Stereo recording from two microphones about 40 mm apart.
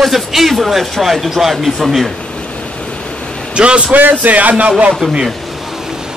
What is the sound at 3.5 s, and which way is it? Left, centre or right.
Speech, right.